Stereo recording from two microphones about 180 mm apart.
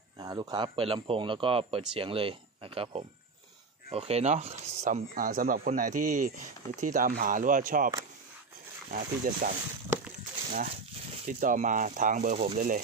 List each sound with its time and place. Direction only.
0.2 s speech: 20° right (ahead or behind); by 7.9 s 50° right (ahead or behind)
8.9 s speech: 45° right (ahead or behind)
11.2 s speech: 50° right (ahead or behind)